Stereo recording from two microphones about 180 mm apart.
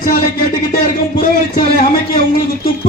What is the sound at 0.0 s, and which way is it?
Music, 50° left (ahead or behind).